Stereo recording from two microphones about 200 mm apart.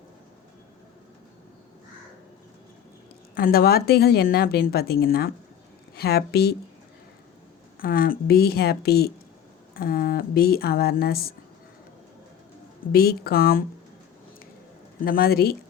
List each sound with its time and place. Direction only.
3.3 s a woman's voice: 50° left (ahead or behind)
7.8 s a woman's voice: 45° left (ahead or behind)
12.9 s a woman's voice: 50° left (ahead or behind)
15.0 s a woman's voice: 50° left (ahead or behind)